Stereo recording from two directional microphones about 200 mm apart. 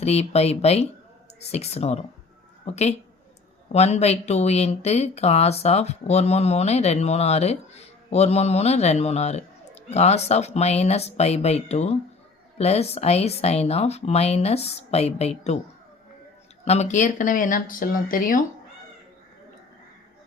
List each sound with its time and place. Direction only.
0.0 s speech: 30° left (ahead or behind)
16.6 s speech: 35° left (ahead or behind)